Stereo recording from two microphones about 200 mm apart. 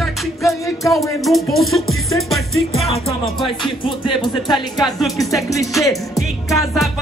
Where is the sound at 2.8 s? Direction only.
30° left (ahead or behind).